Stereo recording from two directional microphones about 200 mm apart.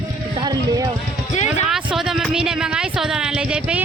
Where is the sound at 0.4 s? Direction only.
20° right (ahead or behind).